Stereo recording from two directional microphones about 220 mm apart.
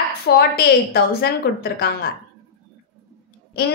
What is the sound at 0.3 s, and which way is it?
A woman's voice, 50° left (ahead or behind).